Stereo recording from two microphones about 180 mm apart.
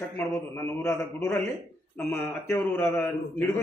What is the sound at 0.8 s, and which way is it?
A man's voice, 15° left (ahead or behind).